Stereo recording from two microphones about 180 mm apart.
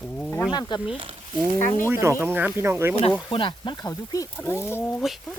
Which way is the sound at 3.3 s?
30° left (ahead or behind).